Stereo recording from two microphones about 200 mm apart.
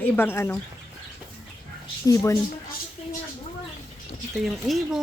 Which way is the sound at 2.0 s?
15° left (ahead or behind).